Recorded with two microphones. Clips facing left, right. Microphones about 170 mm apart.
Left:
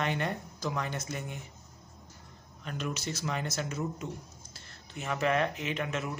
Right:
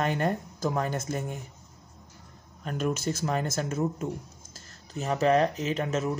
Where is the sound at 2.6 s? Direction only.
45° right (ahead or behind).